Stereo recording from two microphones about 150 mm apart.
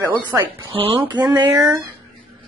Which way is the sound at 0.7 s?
35° right (ahead or behind).